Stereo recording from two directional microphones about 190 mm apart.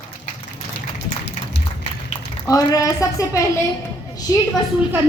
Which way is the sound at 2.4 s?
20° left (ahead or behind).